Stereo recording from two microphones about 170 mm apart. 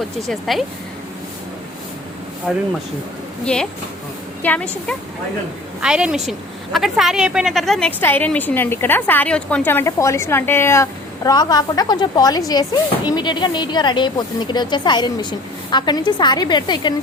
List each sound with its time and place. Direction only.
0.2 s a woman's voice: centre (ahead or behind)
2.5 s a woman's voice: 5° right (ahead or behind)
5.8 s a woman's voice: 5° right (ahead or behind); by 16.9 s 25° left (ahead or behind)